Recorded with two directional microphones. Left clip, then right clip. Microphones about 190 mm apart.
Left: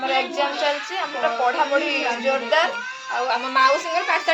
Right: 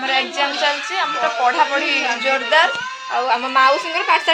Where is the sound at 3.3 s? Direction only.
40° right (ahead or behind).